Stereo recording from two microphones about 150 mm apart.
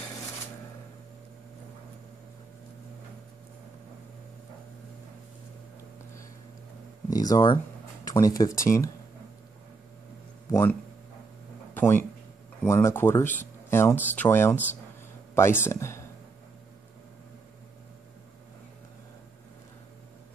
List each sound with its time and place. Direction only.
7.1 s speech: 25° left (ahead or behind)
10.5 s speech: 15° left (ahead or behind)